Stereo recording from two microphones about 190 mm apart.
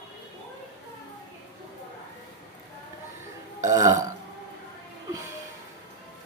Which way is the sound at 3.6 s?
15° right (ahead or behind).